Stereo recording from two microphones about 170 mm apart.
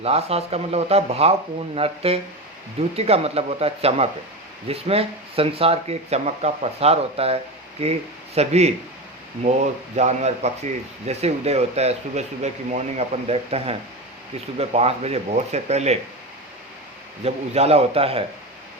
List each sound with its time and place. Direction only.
0.0 s speech: 35° right (ahead or behind)
17.2 s speech: 35° right (ahead or behind)